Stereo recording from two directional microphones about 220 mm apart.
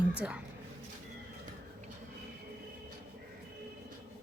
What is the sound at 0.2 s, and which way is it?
Speech, 5° right (ahead or behind).